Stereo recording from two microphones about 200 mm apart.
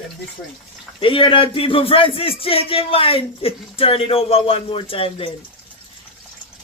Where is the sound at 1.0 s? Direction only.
25° left (ahead or behind).